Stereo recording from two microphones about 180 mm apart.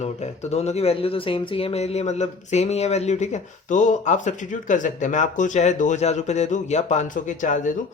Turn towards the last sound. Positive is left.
turn(degrees=45)  # may be behind; listen again after turning